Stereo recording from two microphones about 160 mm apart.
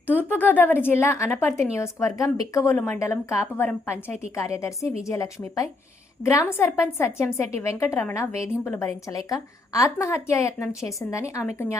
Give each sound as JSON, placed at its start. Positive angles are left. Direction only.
{"t": 0.3, "sound": "a woman's voice", "side_deg": 10}